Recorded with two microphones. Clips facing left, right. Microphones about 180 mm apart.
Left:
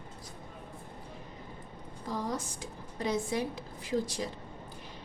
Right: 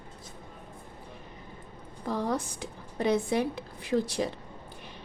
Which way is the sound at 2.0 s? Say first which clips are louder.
Right 5 dB; 60° right (ahead or behind).